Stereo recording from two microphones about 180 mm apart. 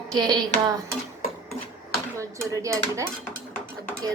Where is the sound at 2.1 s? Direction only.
15° right (ahead or behind).